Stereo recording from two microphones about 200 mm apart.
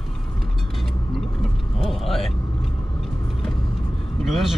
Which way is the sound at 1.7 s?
Centre (ahead or behind).